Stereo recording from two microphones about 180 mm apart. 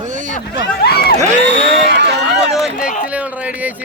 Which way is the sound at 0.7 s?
60° left (ahead or behind).